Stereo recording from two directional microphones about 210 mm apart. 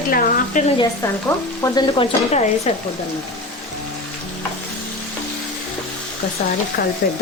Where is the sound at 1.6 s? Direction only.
20° left (ahead or behind).